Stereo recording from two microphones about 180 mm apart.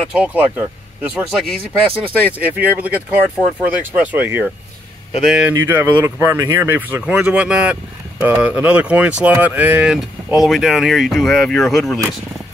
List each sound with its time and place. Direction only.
0.1 s speech: 5° right (ahead or behind)